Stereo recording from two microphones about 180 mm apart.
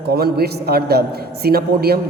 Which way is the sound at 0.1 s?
60° right (ahead or behind).